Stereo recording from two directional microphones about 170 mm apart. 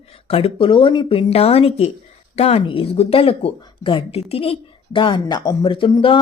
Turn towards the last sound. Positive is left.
turn(degrees=30)  # may be behind; listen again after turning